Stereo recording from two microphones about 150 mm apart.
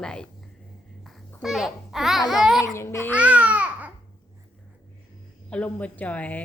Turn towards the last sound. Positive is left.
turn(degrees=10)  # may be behind; listen again after turning